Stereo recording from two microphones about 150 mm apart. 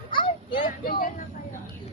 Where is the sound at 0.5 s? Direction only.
75° left (ahead or behind).